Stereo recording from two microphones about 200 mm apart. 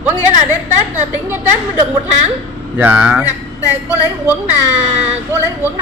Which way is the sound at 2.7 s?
5° right (ahead or behind).